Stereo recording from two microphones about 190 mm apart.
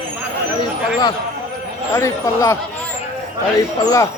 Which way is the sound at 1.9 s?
15° left (ahead or behind).